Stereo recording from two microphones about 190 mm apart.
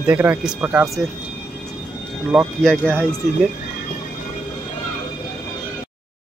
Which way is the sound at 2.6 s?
5° left (ahead or behind).